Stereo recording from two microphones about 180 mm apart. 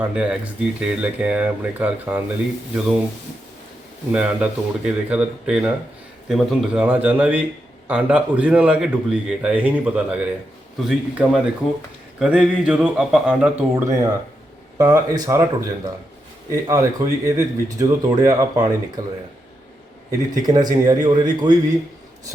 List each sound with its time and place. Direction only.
0.0 s speech: 5° right (ahead or behind)
4.1 s speech: 5° right (ahead or behind)
14.8 s speech: 20° right (ahead or behind)
20.1 s speech: 20° right (ahead or behind)